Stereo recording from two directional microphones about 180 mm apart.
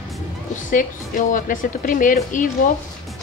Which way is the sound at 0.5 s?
45° left (ahead or behind).